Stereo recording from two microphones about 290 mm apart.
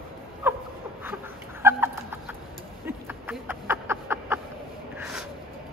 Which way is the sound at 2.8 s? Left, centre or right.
Centre.